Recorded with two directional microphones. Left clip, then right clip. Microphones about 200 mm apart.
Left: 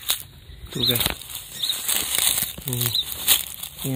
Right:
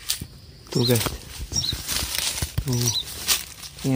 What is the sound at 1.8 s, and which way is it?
Bird flight, 35° left (ahead or behind).